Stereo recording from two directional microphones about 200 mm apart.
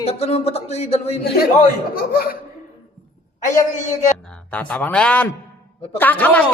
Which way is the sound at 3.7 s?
35° left (ahead or behind).